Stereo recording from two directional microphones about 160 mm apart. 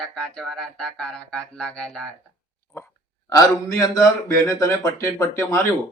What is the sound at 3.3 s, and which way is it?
A man's voice, 20° left (ahead or behind).